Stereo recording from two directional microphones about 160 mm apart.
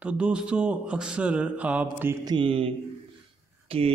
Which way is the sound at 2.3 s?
35° right (ahead or behind).